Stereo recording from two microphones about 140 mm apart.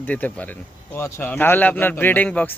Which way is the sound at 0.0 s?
10° left (ahead or behind).